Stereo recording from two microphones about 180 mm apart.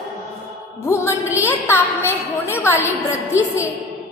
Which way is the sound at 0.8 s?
15° left (ahead or behind).